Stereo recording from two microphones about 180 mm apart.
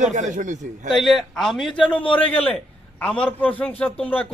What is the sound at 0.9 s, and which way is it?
A man's voice, centre (ahead or behind).